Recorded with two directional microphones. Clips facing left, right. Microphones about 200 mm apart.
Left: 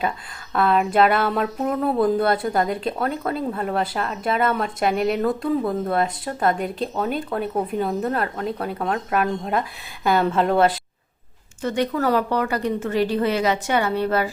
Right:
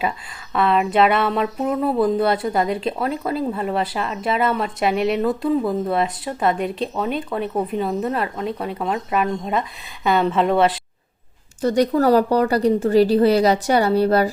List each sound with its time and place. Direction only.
0.5 s a woman's voice: centre (ahead or behind)
11.6 s a woman's voice: 35° right (ahead or behind)